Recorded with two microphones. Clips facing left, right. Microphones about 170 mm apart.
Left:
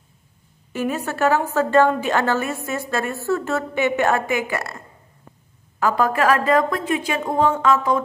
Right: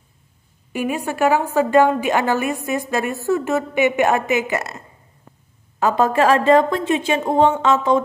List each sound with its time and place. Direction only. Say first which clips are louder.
0.7 s a woman's voice: right 2 dB; 15° right (ahead or behind)